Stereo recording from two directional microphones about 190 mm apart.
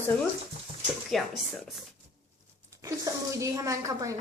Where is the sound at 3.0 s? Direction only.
15° right (ahead or behind).